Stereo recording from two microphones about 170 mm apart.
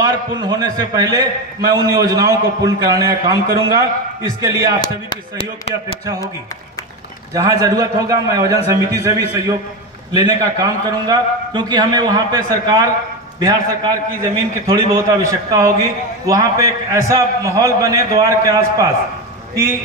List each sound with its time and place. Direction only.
0.0 s a man's voice: 20° right (ahead or behind)
4.7 s speech: 30° left (ahead or behind)
7.3 s a man's voice: 20° right (ahead or behind)